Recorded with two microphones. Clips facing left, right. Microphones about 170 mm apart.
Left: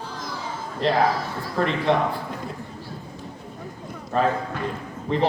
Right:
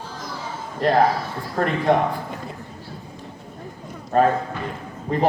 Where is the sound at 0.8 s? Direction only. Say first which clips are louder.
Right 3 dB; 50° right (ahead or behind).